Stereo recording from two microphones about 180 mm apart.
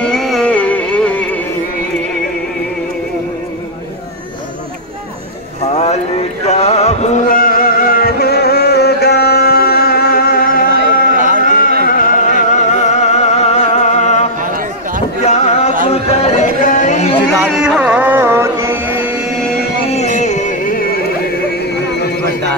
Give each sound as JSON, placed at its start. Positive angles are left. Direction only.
{"t": 0.0, "sound": "music", "side_deg": 0}
{"t": 6.4, "sound": "music", "side_deg": 35}
{"t": 11.1, "sound": "a sound", "side_deg": -45}
{"t": 11.4, "sound": "music", "side_deg": 50}
{"t": 14.4, "sound": "a sound", "side_deg": -50}
{"t": 15.2, "sound": "music", "side_deg": 40}
{"t": 17.4, "sound": "music", "side_deg": -5}
{"t": 20.2, "sound": "music", "side_deg": 40}